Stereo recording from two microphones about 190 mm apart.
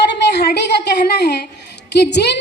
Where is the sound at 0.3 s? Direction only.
60° left (ahead or behind).